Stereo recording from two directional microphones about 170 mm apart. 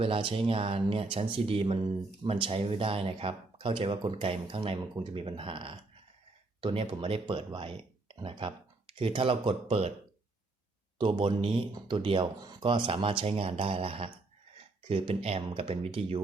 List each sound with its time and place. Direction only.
0.0 s speech: 30° right (ahead or behind)
10.9 s speech: 30° right (ahead or behind)